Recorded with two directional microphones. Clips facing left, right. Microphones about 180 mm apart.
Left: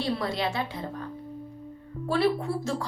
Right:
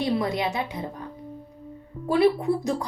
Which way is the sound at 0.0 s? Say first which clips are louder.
Right 3 dB; 20° right (ahead or behind).